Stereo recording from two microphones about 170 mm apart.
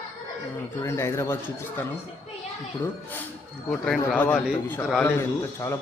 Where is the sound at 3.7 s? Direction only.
5° left (ahead or behind).